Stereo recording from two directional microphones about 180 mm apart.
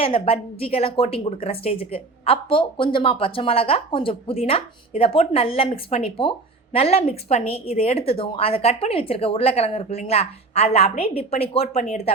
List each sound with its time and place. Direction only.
0.0 s a woman's voice: 30° left (ahead or behind)